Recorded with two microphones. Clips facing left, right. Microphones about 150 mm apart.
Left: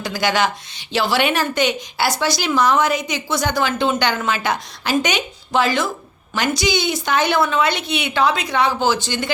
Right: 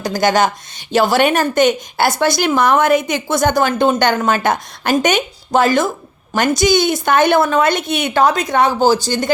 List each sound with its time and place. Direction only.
0.0 s a woman's voice: 45° right (ahead or behind)